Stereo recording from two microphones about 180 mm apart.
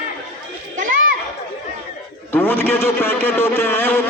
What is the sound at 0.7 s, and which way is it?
Children playing, 45° right (ahead or behind).